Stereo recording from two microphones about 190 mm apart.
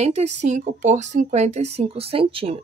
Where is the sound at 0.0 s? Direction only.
35° right (ahead or behind).